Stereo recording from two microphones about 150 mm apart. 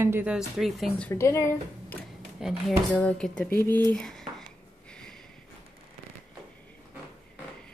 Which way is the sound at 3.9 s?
5° left (ahead or behind).